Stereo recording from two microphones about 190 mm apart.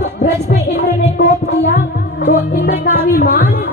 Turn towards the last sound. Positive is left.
turn(degrees=50)  # may be behind; listen again after turning